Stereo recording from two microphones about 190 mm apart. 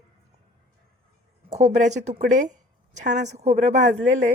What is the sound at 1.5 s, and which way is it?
Speech, 35° right (ahead or behind).